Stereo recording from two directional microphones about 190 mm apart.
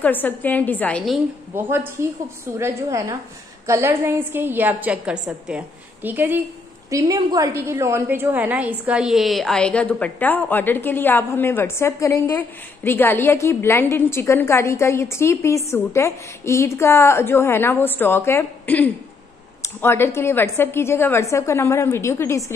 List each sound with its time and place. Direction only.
0.0 s a woman's voice: 10° left (ahead or behind)
1.5 s a woman's voice: 10° right (ahead or behind); by 22.4 s 15° left (ahead or behind)